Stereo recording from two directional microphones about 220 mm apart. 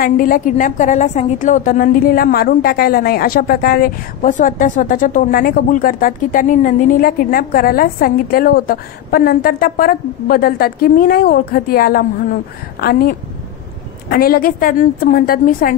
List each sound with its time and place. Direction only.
0.0 s a woman's voice: 40° left (ahead or behind)
14.0 s a woman's voice: 45° left (ahead or behind)